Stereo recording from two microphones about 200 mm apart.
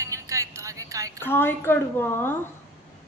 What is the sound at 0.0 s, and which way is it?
Music, 15° right (ahead or behind).